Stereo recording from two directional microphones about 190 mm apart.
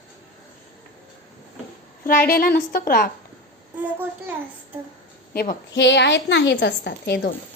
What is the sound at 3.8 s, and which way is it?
Speech, 10° right (ahead or behind).